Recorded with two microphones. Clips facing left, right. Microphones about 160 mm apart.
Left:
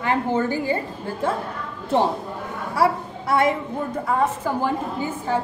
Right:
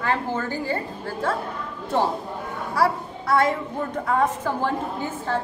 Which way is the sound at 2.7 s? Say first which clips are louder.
Left 2 dB; 20° left (ahead or behind).